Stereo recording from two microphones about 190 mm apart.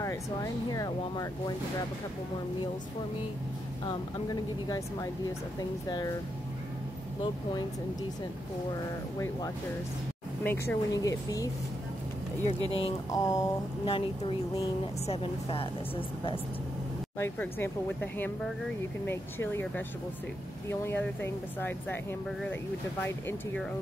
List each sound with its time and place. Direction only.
0.0 s speech: 15° left (ahead or behind)
3.8 s speech: 20° left (ahead or behind)
10.4 s speech: 10° left (ahead or behind)
12.6 s speech: 30° left (ahead or behind)
13.1 s speech: 20° left (ahead or behind)
17.2 s speech: 10° left (ahead or behind)